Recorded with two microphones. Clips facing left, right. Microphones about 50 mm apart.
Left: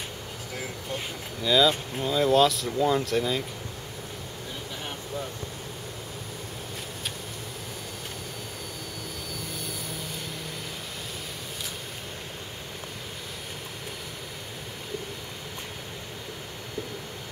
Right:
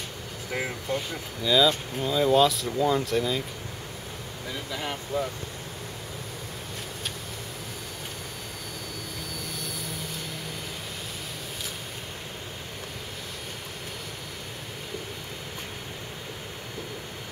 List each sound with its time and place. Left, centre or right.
0.5 s speech: right
1.4 s speech: centre
4.7 s speech: right